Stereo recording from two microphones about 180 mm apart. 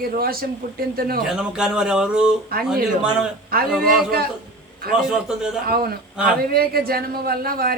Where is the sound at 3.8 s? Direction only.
55° right (ahead or behind).